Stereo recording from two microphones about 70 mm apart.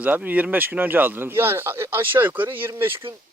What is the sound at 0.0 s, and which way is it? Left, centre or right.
Speech, right.